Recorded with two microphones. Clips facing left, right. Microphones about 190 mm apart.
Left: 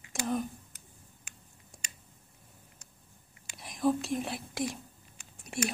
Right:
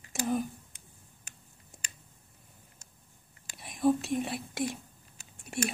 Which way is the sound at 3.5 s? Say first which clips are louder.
Right 2 dB; centre (ahead or behind).